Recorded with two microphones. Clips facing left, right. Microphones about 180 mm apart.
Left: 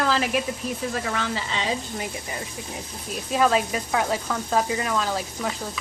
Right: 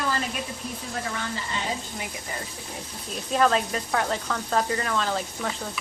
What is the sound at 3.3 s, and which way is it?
Speech, 5° left (ahead or behind).